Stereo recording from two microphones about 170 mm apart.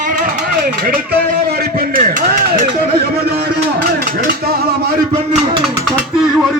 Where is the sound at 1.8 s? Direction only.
55° right (ahead or behind).